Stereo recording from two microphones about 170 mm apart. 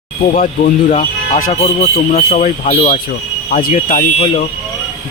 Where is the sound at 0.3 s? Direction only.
50° left (ahead or behind).